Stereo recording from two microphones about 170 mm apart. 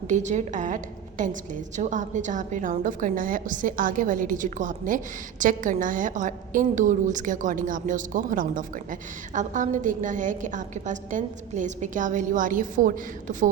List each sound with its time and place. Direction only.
0.1 s a woman's voice: 45° right (ahead or behind)